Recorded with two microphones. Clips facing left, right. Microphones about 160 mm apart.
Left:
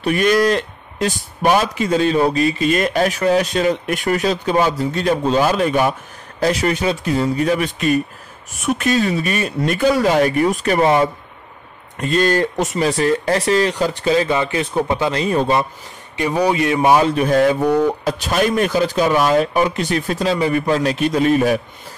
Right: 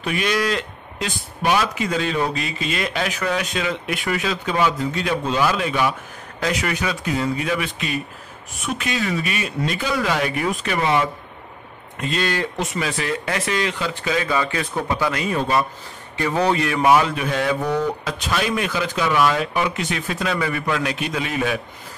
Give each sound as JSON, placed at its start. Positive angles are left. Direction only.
{"t": 0.0, "sound": "a man's voice", "side_deg": 45}
{"t": 6.4, "sound": "a man's voice", "side_deg": 35}
{"t": 16.2, "sound": "a man's voice", "side_deg": 15}
{"t": 17.1, "sound": "a man's voice", "side_deg": 40}